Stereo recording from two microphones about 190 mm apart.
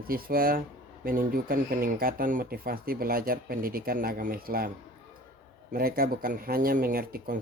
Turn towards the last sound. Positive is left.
turn(degrees=-50)  # may be behind; listen again after turning